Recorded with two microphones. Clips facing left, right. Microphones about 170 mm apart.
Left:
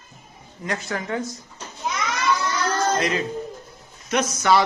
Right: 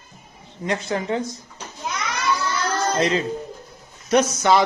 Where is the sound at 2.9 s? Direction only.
30° right (ahead or behind).